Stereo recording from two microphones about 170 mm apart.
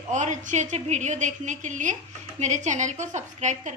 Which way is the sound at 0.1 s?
45° right (ahead or behind).